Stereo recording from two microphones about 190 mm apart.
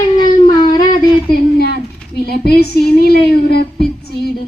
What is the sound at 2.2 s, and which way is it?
Speech, 55° left (ahead or behind).